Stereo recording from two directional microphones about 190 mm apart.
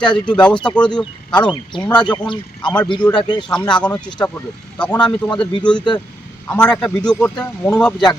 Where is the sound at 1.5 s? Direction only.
25° left (ahead or behind).